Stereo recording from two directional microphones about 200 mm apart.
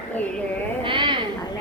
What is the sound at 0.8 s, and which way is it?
Speech, 25° right (ahead or behind).